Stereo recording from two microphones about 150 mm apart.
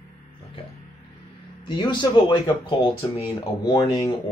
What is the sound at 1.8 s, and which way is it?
Speech, 30° left (ahead or behind).